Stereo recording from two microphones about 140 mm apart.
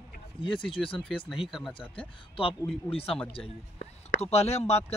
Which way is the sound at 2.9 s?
40° left (ahead or behind).